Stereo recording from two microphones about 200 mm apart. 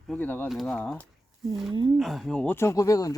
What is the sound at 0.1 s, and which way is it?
Speech, 10° left (ahead or behind).